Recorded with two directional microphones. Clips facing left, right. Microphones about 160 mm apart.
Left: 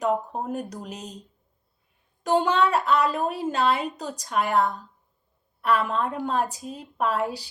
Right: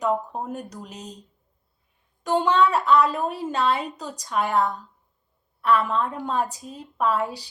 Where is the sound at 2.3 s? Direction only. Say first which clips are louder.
Right 1 dB; 5° left (ahead or behind).